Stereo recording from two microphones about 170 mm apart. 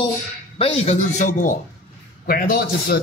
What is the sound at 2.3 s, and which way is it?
Speech, 60° left (ahead or behind).